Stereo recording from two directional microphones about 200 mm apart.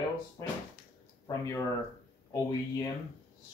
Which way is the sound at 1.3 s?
15° left (ahead or behind).